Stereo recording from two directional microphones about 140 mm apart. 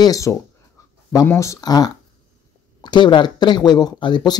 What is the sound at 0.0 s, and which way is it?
Speech, 25° left (ahead or behind).